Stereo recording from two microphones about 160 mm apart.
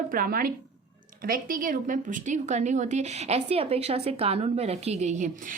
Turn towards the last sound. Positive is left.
turn(degrees=-45)  # may be behind; listen again after turning